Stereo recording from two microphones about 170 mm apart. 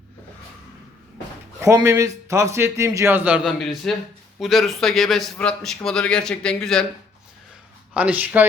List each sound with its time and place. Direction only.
1.5 s a man's voice: 15° right (ahead or behind); by 6.8 s 5° left (ahead or behind)
7.9 s a man's voice: 10° right (ahead or behind)